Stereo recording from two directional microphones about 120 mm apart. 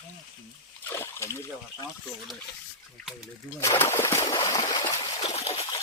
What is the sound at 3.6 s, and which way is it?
Speech, 25° left (ahead or behind).